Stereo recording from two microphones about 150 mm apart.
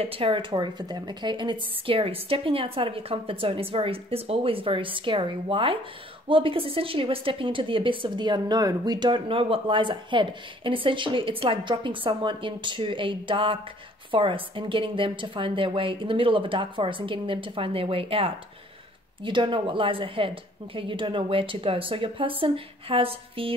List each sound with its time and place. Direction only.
0.0 s a woman's voice: 40° right (ahead or behind)